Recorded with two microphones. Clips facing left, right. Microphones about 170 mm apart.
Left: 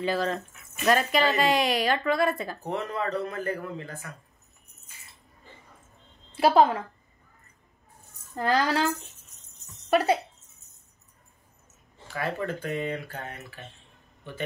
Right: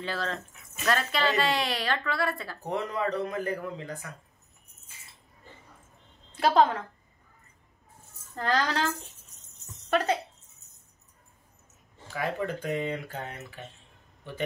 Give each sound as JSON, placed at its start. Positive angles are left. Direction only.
{"t": 0.0, "sound": "speech", "side_deg": 15}
{"t": 2.6, "sound": "speech", "side_deg": -15}
{"t": 6.3, "sound": "speech", "side_deg": 10}
{"t": 8.4, "sound": "speech", "side_deg": 10}
{"t": 12.1, "sound": "speech", "side_deg": -15}